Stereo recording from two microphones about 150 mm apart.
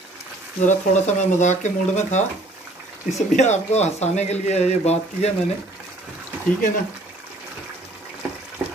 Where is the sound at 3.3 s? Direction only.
50° left (ahead or behind).